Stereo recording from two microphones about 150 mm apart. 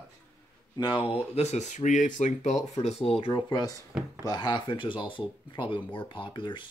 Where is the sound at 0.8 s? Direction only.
30° left (ahead or behind); by 2.5 s 55° left (ahead or behind).